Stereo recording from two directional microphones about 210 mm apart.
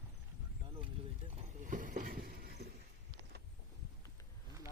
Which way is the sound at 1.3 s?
35° right (ahead or behind).